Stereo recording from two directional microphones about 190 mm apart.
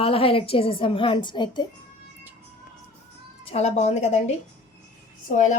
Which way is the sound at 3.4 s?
30° left (ahead or behind).